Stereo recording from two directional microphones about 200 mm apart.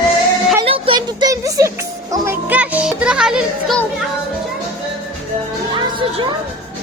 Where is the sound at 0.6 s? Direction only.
25° right (ahead or behind).